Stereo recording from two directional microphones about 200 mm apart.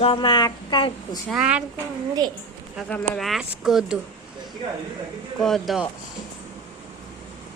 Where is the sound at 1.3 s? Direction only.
5° right (ahead or behind).